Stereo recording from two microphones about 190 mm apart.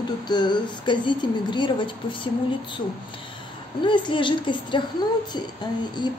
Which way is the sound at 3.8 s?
25° left (ahead or behind).